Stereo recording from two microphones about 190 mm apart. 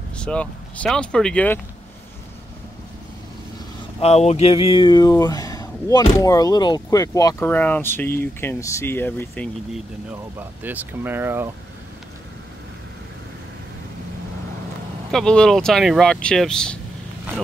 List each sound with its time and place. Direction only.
0.2 s speech: 5° left (ahead or behind)
4.0 s speech: 35° left (ahead or behind); by 9.5 s 10° left (ahead or behind)
10.6 s speech: 10° right (ahead or behind)
15.0 s speech: 5° left (ahead or behind)